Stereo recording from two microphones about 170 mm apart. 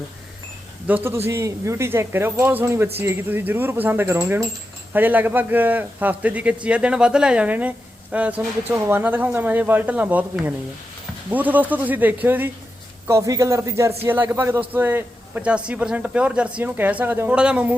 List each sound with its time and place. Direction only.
0.9 s speech: 10° right (ahead or behind)
11.3 s speech: 10° right (ahead or behind)